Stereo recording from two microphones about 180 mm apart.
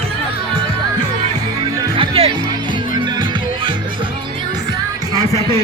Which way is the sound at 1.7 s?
25° right (ahead or behind).